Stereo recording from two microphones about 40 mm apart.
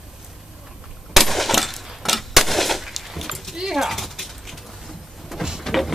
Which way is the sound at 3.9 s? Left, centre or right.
Centre.